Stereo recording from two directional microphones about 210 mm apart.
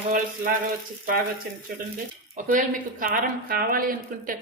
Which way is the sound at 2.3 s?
40° right (ahead or behind).